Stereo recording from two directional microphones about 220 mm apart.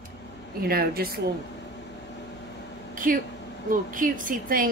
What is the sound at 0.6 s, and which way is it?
Speech, 45° right (ahead or behind).